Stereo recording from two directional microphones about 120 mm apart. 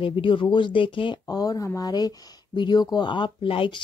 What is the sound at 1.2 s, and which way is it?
Speech, 30° left (ahead or behind).